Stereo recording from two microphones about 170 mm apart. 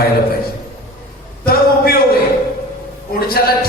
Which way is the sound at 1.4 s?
65° left (ahead or behind).